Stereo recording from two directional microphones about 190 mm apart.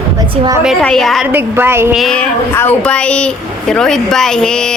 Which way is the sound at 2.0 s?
5° left (ahead or behind).